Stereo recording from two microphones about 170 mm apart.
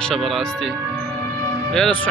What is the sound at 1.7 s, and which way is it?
Speech, 5° left (ahead or behind).